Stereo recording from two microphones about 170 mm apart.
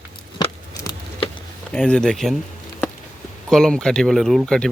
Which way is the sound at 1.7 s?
5° left (ahead or behind).